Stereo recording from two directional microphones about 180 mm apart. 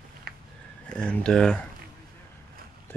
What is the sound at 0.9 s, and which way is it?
Speech, 5° left (ahead or behind).